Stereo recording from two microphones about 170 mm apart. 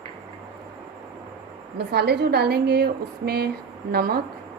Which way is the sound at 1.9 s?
70° right (ahead or behind).